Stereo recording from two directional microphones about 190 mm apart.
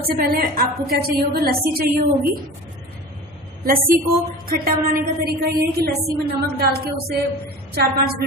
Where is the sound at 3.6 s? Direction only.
50° right (ahead or behind).